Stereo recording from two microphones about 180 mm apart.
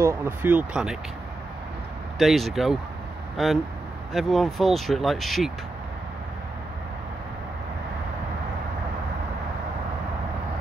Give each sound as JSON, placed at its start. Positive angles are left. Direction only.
{"t": 0.0, "sound": "speech", "side_deg": -15}
{"t": 2.1, "sound": "speech", "side_deg": 0}